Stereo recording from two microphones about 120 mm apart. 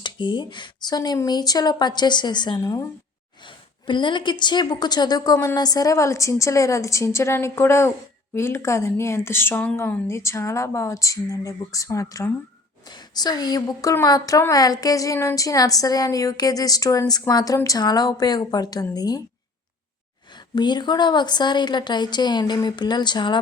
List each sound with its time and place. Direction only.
0.0 s speech: 40° left (ahead or behind)
2.6 s a woman's voice: 25° left (ahead or behind)
3.4 s a woman's voice: 40° left (ahead or behind)
20.3 s speech: 40° left (ahead or behind)